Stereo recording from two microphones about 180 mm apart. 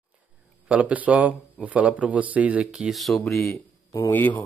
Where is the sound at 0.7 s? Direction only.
10° right (ahead or behind).